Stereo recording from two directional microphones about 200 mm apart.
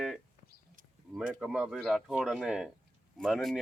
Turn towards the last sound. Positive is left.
turn(degrees=0)  # may be behind; listen again after turning